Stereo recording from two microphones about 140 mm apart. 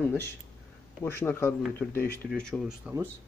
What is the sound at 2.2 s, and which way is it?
Speech, 5° left (ahead or behind).